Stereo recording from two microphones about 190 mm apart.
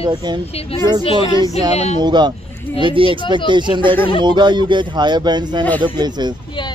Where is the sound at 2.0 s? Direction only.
25° right (ahead or behind).